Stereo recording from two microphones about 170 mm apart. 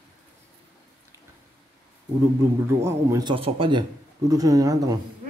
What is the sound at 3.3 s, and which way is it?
Speech, 30° right (ahead or behind).